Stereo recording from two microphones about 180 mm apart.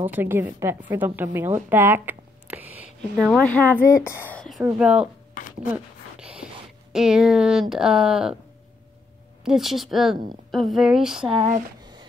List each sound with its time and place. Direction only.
0.0 s a woman's voice: 10° right (ahead or behind)
3.3 s speech: 5° left (ahead or behind)
6.1 s a sound: 5° right (ahead or behind)
7.7 s speech: 5° right (ahead or behind)
9.4 s speech: centre (ahead or behind)
11.8 s a sound: 25° right (ahead or behind)